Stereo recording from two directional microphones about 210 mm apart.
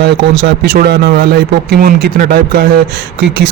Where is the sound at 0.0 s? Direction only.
50° right (ahead or behind).